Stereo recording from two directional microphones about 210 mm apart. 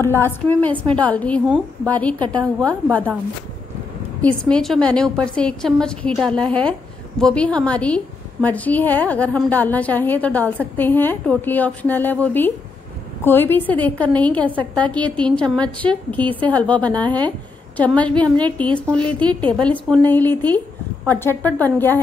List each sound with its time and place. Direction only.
0.0 s a woman's voice: 10° left (ahead or behind)
2.2 s a woman's voice: 20° right (ahead or behind)
4.2 s a woman's voice: 5° left (ahead or behind)